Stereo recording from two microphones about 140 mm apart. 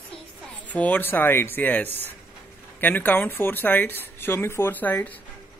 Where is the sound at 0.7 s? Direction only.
10° left (ahead or behind).